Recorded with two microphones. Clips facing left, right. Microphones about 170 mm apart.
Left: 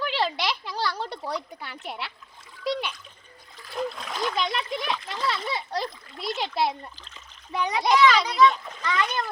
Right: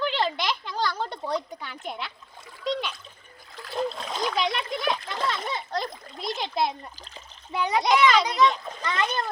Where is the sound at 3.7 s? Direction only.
25° right (ahead or behind).